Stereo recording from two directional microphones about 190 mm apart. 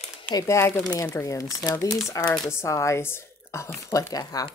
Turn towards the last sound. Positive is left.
turn(degrees=20)  # may be behind; listen again after turning